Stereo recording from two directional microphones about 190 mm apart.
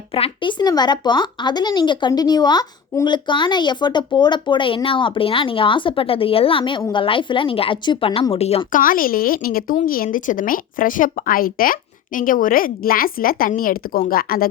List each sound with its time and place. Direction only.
0.1 s speech: 25° left (ahead or behind)
8.8 s a woman's voice: 50° left (ahead or behind)